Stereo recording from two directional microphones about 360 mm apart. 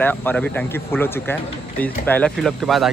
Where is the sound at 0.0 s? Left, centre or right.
Centre.